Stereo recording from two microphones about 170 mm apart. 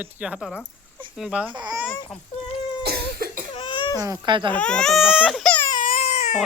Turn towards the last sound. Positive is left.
turn(degrees=45)  # may be behind; listen again after turning